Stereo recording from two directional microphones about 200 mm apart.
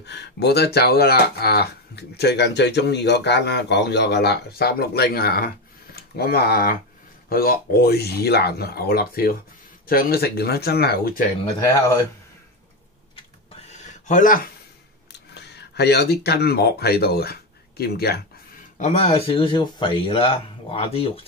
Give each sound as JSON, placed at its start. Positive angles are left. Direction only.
{"t": 0.0, "sound": "speech", "side_deg": 60}
{"t": 13.7, "sound": "a sound", "side_deg": 35}
{"t": 15.3, "sound": "speech", "side_deg": 55}
{"t": 18.8, "sound": "speech", "side_deg": 35}